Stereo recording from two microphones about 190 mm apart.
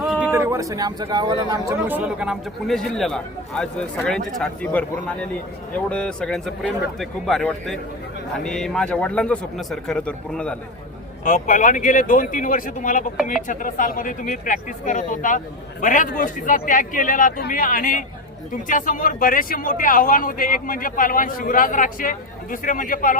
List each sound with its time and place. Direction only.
0.0 s a man's voice: 5° right (ahead or behind); by 1.7 s 20° right (ahead or behind)
1.9 s a man's voice: 5° right (ahead or behind)
11.3 s a man's voice: 45° left (ahead or behind)